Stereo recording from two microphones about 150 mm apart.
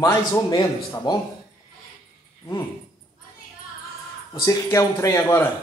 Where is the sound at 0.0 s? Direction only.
25° left (ahead or behind).